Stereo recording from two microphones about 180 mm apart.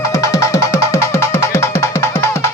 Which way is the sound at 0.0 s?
15° left (ahead or behind).